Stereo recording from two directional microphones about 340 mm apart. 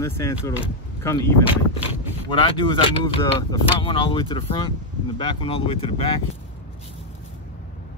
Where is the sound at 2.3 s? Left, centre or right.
Centre.